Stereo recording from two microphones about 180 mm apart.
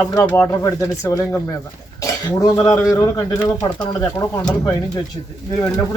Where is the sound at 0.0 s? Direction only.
15° left (ahead or behind).